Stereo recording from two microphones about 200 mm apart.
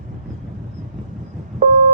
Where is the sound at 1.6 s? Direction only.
35° right (ahead or behind).